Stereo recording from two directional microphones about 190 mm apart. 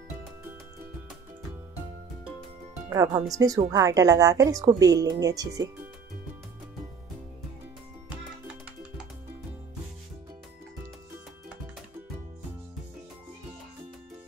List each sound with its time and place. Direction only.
2.9 s speech: 15° right (ahead or behind)